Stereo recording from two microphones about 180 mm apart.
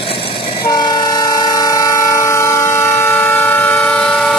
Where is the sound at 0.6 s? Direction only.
20° left (ahead or behind).